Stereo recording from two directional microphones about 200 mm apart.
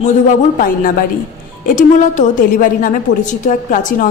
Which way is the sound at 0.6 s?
45° left (ahead or behind).